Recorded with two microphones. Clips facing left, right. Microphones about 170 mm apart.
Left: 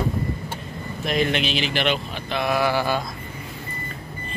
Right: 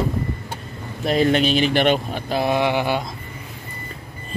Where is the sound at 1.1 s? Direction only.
35° right (ahead or behind).